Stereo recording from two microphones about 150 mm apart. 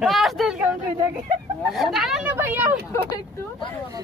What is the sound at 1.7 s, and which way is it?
Speech, centre (ahead or behind).